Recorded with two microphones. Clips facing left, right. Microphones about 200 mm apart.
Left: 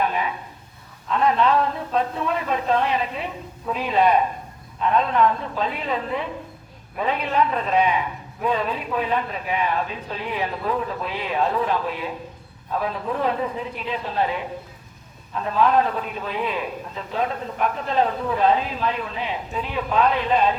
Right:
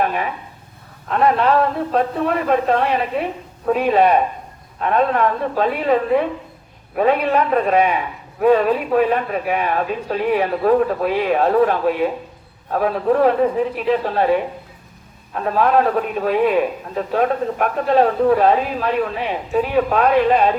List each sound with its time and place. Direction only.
1.1 s a man's voice: 55° right (ahead or behind)
15.4 s a man's voice: 60° right (ahead or behind)